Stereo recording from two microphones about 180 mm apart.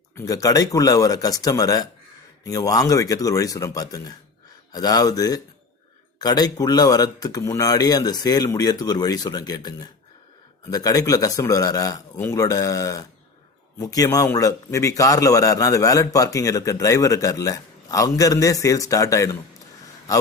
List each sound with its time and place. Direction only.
0.2 s a man's voice: 20° left (ahead or behind)